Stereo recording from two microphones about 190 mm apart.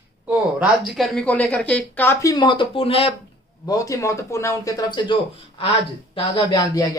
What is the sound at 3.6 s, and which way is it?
Speech, 15° left (ahead or behind).